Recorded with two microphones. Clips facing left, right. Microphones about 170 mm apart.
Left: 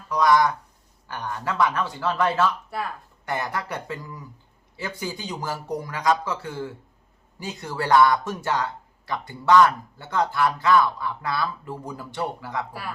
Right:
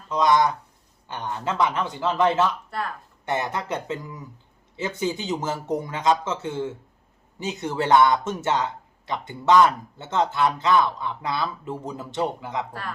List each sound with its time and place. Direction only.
0.1 s speech: 20° right (ahead or behind)
2.6 s speech: 5° left (ahead or behind)
3.2 s speech: 20° right (ahead or behind)